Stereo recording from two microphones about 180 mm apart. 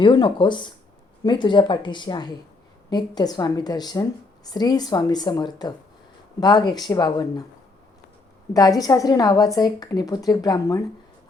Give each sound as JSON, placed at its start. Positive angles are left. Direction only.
{"t": 0.0, "sound": "a woman's voice", "side_deg": 25}
{"t": 8.5, "sound": "a woman's voice", "side_deg": 20}